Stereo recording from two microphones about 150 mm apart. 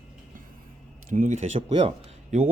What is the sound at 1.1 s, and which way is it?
Speech, 60° right (ahead or behind).